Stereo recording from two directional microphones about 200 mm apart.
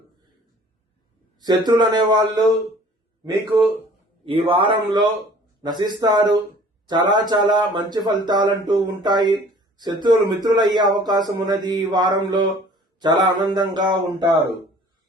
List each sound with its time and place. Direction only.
1.4 s speech: 20° right (ahead or behind)
4.3 s speech: 25° right (ahead or behind)